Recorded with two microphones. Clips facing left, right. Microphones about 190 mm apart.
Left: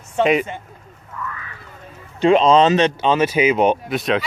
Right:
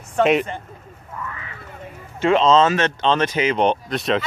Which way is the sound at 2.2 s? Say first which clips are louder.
Left 2 dB; 15° left (ahead or behind).